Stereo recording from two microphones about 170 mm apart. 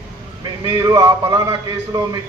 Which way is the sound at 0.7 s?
25° right (ahead or behind).